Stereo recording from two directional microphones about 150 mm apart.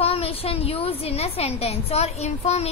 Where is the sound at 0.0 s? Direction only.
40° left (ahead or behind).